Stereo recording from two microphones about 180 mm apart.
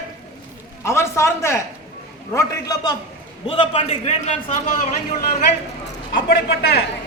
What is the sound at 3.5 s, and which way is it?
Speech, 30° left (ahead or behind).